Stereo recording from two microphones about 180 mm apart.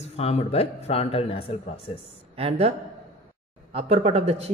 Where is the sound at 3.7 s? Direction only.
35° right (ahead or behind).